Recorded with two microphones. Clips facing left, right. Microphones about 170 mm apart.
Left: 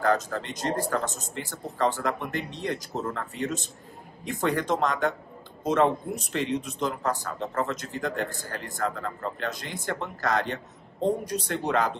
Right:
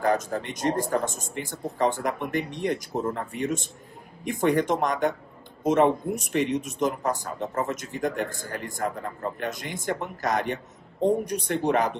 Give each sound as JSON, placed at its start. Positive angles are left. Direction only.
{"t": 0.0, "sound": "a man's voice", "side_deg": -15}